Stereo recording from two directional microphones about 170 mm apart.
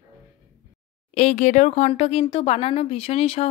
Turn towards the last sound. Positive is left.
turn(degrees=35)  # may be behind; listen again after turning